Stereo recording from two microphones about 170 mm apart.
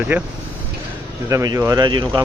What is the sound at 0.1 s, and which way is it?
Speech, 15° right (ahead or behind).